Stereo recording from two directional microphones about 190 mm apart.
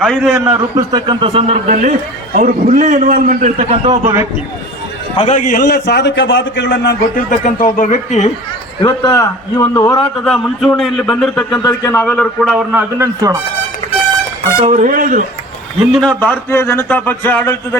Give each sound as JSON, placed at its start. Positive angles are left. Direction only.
{"t": 0.3, "sound": "a man's voice", "side_deg": -20}
{"t": 4.0, "sound": "a man's voice", "side_deg": -15}
{"t": 5.1, "sound": "a man's voice", "side_deg": 35}
{"t": 5.5, "sound": "speech", "side_deg": 55}
{"t": 7.3, "sound": "speech", "side_deg": 45}
{"t": 8.8, "sound": "a man's voice", "side_deg": 25}
{"t": 10.2, "sound": "speech", "side_deg": 5}
{"t": 11.5, "sound": "a man's voice", "side_deg": 20}
{"t": 12.7, "sound": "a man's voice", "side_deg": -15}
{"t": 14.6, "sound": "a man's voice", "side_deg": -40}
{"t": 15.8, "sound": "a man's voice", "side_deg": 0}